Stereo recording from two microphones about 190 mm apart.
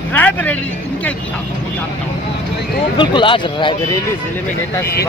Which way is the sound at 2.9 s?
25° left (ahead or behind).